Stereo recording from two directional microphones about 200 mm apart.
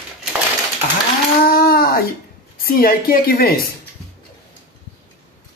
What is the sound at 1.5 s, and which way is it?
Speech, 50° left (ahead or behind).